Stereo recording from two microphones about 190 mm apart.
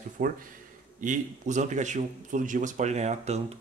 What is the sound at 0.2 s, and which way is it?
A man's voice, 45° right (ahead or behind).